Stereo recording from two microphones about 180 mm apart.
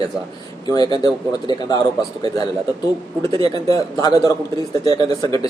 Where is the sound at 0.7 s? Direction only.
20° left (ahead or behind).